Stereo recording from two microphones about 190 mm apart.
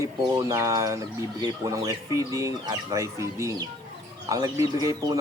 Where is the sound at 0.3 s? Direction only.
15° right (ahead or behind).